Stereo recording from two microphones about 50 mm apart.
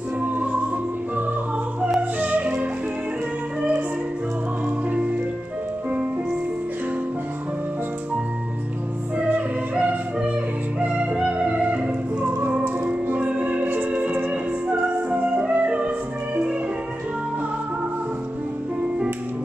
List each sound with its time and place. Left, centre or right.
0.2 s music: right
2.0 s music: right
9.8 s music: right